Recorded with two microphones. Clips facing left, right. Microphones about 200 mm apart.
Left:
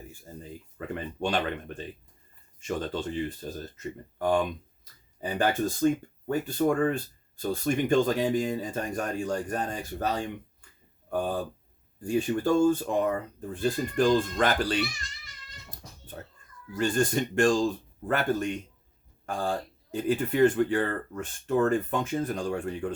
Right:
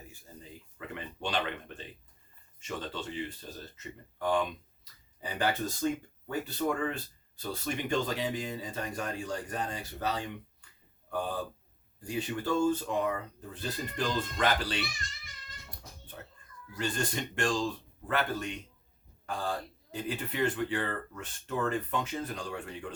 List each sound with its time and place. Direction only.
0.8 s speech: 45° left (ahead or behind)
15.7 s cat: 45° left (ahead or behind)
16.7 s speech: 50° left (ahead or behind)